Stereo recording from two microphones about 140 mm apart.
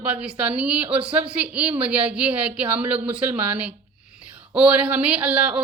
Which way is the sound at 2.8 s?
40° right (ahead or behind).